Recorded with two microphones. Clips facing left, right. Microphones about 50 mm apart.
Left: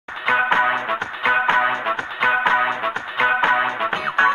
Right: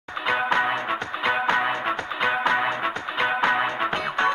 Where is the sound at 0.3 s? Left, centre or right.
Left.